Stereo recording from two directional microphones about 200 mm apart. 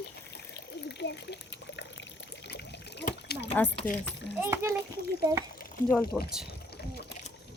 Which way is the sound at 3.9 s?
45° left (ahead or behind).